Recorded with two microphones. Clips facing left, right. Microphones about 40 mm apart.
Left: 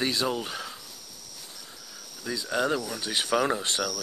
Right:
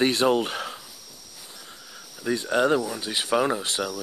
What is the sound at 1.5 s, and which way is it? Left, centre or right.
Cricket, centre.